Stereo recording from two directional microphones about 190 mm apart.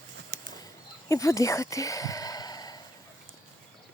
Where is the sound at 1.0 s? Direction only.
15° left (ahead or behind).